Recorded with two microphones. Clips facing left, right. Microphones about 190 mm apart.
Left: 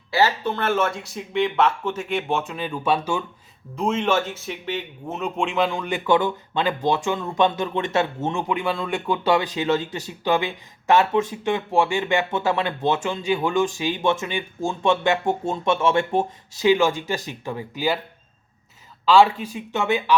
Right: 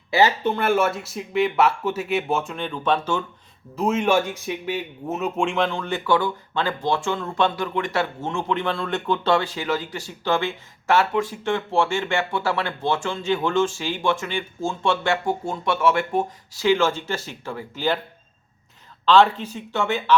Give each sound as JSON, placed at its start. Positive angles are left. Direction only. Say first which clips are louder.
{"t": 0.1, "sound": "speech", "louder": "right 2 dB", "side_deg": -20}
{"t": 3.8, "sound": "speech", "louder": "right 2 dB", "side_deg": -10}
{"t": 19.0, "sound": "speech", "louder": "left 1 dB", "side_deg": 10}